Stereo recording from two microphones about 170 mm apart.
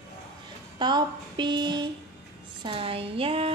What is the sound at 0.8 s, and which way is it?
Speech, 25° right (ahead or behind).